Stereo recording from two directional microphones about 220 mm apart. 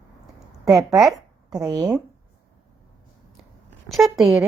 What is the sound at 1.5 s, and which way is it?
Speech, 15° right (ahead or behind).